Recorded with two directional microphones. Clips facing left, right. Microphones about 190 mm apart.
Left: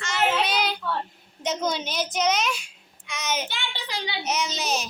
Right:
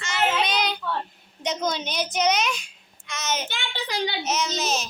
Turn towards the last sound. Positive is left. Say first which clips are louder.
# right 1 dB
turn(degrees=10)  # may be behind; listen again after turning